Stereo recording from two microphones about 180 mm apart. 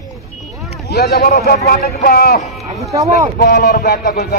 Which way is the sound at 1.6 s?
55° left (ahead or behind).